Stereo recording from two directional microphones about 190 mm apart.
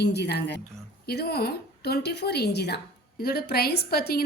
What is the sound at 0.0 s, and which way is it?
A woman's voice, 60° left (ahead or behind).